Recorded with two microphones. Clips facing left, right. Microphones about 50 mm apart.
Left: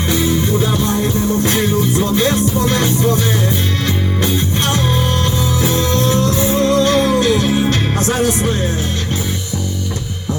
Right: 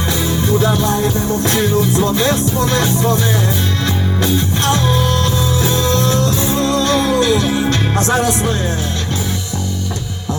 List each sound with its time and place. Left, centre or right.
1.5 s music: centre
4.7 s music: left